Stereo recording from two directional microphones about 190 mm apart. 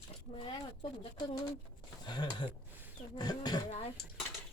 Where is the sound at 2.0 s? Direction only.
25° left (ahead or behind).